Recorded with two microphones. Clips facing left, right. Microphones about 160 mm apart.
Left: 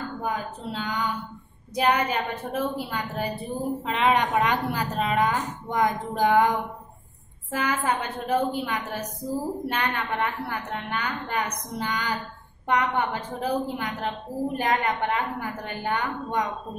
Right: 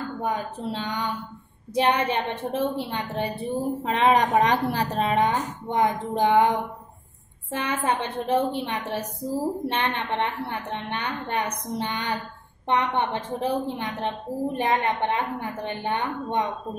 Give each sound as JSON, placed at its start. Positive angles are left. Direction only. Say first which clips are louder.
{"t": 0.2, "sound": "a woman's voice", "louder": "right 3 dB", "side_deg": -30}
{"t": 7.5, "sound": "a woman's voice", "louder": "even", "side_deg": -30}